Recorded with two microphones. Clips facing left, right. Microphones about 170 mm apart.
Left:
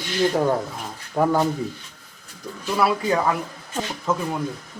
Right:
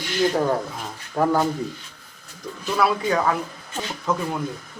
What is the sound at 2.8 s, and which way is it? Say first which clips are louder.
Speech: even; 5° left (ahead or behind).